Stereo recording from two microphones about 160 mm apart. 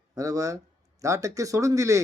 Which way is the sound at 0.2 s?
20° right (ahead or behind).